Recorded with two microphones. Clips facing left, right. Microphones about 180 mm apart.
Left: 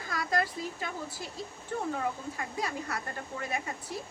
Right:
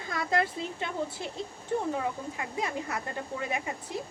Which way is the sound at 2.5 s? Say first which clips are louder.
Right 3 dB; 20° right (ahead or behind).